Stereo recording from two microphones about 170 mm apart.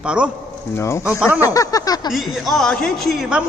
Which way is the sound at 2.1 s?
Centre (ahead or behind).